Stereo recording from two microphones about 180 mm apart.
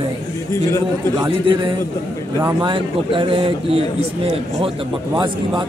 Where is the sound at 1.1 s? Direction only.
25° right (ahead or behind).